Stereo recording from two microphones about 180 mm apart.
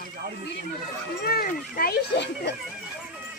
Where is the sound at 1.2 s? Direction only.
55° left (ahead or behind).